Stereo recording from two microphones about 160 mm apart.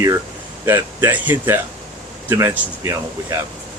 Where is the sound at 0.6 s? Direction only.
15° right (ahead or behind).